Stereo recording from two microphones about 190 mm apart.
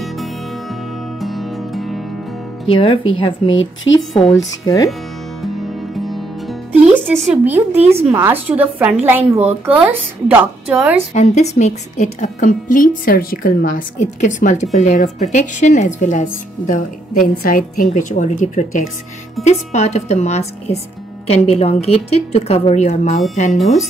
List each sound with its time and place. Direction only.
1.2 s music: centre (ahead or behind)
2.6 s speech: 30° left (ahead or behind)
3.4 s a woman's voice: 90° left
4.6 s speech: 20° left (ahead or behind)
5.9 s music: centre (ahead or behind)
7.7 s speech: 35° right (ahead or behind)
8.1 s a woman's voice: 10° right (ahead or behind)
11.1 s a woman's voice: 35° left (ahead or behind)